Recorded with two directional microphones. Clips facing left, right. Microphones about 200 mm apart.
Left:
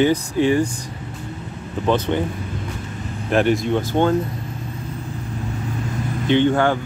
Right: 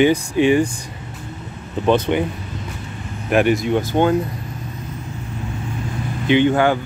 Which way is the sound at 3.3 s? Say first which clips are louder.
Right 2 dB; 10° right (ahead or behind).